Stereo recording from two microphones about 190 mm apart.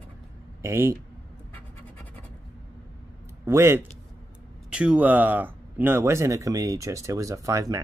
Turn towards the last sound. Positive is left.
turn(degrees=-20)  # may be behind; listen again after turning